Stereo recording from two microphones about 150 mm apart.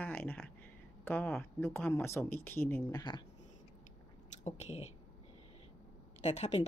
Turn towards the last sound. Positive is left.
turn(degrees=45)  # may be behind; listen again after turning